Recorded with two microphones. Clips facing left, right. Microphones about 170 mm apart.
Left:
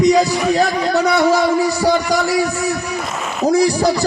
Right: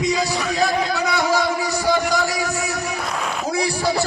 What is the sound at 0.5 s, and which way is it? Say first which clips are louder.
Speech: left 2 dB; 40° left (ahead or behind).